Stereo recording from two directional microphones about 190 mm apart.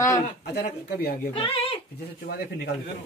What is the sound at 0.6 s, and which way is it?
Speech, 55° left (ahead or behind).